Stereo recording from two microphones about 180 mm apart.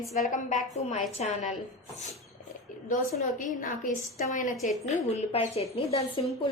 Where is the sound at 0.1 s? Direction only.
40° left (ahead or behind).